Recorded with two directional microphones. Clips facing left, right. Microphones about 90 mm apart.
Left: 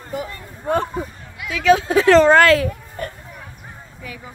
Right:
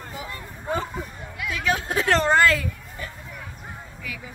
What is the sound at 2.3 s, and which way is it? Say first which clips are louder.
Speech: left 6 dB; 90° left.